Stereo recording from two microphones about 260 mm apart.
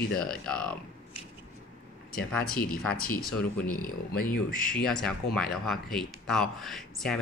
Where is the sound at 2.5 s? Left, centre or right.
Left.